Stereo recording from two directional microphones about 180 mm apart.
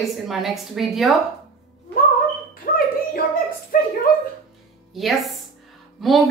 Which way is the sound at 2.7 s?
55° left (ahead or behind).